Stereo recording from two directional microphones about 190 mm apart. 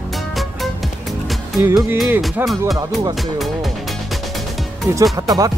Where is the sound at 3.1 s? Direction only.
Centre (ahead or behind).